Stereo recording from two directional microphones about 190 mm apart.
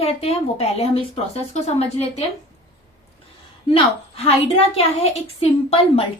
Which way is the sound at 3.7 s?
30° left (ahead or behind).